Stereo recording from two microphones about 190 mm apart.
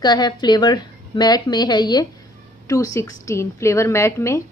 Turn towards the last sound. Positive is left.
turn(degrees=15)  # may be behind; listen again after turning